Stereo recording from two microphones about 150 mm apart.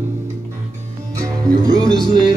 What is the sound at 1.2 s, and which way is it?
Music, 30° right (ahead or behind).